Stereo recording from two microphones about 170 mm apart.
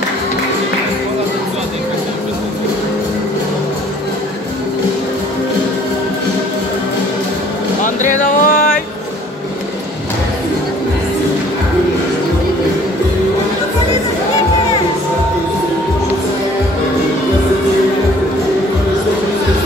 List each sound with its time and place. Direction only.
7.8 s music: 50° left (ahead or behind)